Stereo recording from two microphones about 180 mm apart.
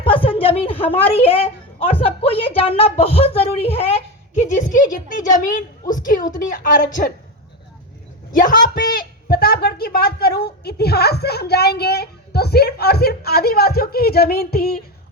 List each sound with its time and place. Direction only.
0.0 s a sound: 30° left (ahead or behind)
1.8 s a woman's voice: 30° left (ahead or behind); by 7.1 s 50° left (ahead or behind)
8.3 s speech: 50° left (ahead or behind)